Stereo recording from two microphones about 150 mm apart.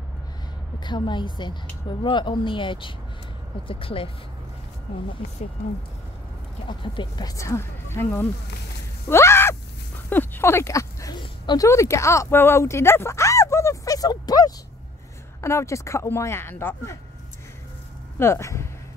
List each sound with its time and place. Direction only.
0.7 s a woman's voice: 30° left (ahead or behind)
6.7 s speech: 30° left (ahead or behind); by 8.3 s 15° left (ahead or behind)
9.1 s a sound: 15° left (ahead or behind)
10.0 s speech: 15° left (ahead or behind)
11.1 s a sound: 25° left (ahead or behind)
15.4 s speech: 20° left (ahead or behind)
18.2 s speech: 20° left (ahead or behind)